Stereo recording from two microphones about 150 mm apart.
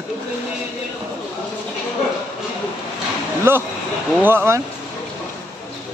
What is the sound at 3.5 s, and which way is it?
Speech, 15° right (ahead or behind).